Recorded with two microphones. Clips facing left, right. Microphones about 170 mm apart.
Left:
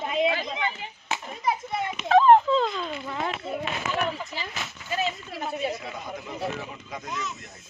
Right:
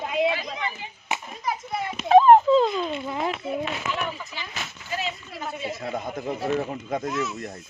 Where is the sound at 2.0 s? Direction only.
15° right (ahead or behind).